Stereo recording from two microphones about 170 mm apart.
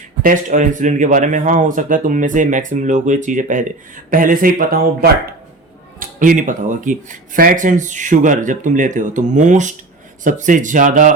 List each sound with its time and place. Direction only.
0.2 s speech: 50° right (ahead or behind)